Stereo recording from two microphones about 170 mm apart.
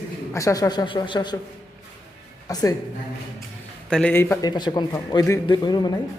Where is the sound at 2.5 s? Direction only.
20° left (ahead or behind).